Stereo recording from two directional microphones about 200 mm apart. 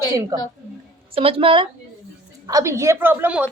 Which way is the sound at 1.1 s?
30° right (ahead or behind).